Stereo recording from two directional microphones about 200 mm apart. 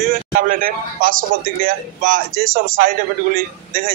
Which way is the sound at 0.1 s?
45° right (ahead or behind).